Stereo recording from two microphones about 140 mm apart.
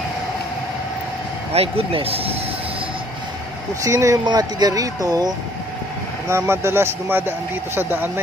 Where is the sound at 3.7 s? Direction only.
25° right (ahead or behind).